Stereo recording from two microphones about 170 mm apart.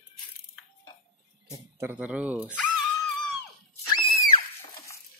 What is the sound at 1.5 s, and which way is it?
Speech, 15° right (ahead or behind).